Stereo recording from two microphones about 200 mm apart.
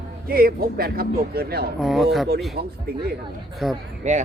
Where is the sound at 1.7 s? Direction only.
Centre (ahead or behind).